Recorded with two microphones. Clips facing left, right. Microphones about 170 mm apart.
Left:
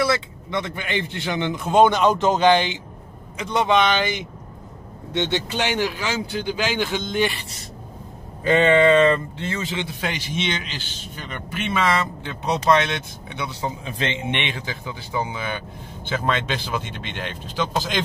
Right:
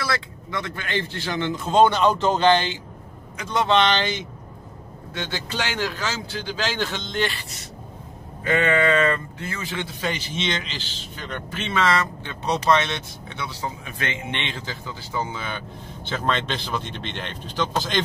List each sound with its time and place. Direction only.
0.0 s a man's voice: 25° left (ahead or behind)
8.5 s a man's voice: 25° left (ahead or behind)
13.3 s a man's voice: 15° left (ahead or behind)